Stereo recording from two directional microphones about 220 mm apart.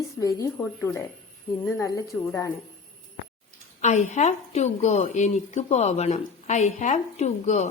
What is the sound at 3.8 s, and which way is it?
A woman's voice, 30° left (ahead or behind).